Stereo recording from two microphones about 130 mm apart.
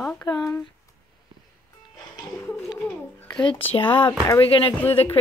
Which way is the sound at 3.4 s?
45° left (ahead or behind).